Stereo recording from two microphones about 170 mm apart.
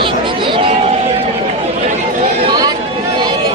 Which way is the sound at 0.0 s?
30° right (ahead or behind).